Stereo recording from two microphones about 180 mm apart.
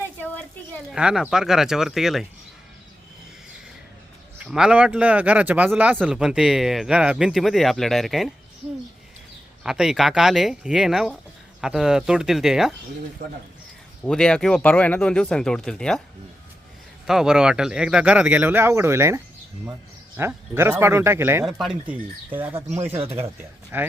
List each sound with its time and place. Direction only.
0.2 s a sound: 10° left (ahead or behind)
0.9 s speech: 5° right (ahead or behind)
4.4 s speech: 5° right (ahead or behind)
9.6 s speech: 5° right (ahead or behind)
13.2 s speech: 50° right (ahead or behind)
14.0 s speech: 5° left (ahead or behind)
17.1 s speech: 5° right (ahead or behind)